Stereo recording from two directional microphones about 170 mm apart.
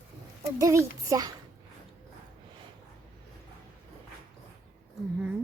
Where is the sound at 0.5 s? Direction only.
15° right (ahead or behind).